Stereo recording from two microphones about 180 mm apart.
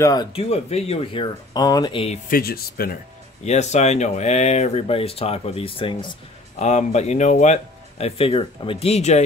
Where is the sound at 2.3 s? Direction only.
55° left (ahead or behind).